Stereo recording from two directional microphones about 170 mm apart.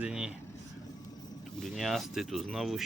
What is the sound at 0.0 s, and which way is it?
Speech, 5° right (ahead or behind).